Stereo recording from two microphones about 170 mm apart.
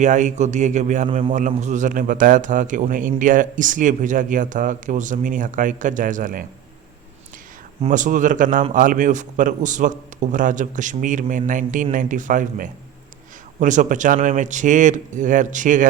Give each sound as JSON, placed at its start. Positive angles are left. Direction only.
{"t": 0.0, "sound": "a man's voice", "side_deg": -45}
{"t": 7.9, "sound": "a man's voice", "side_deg": -50}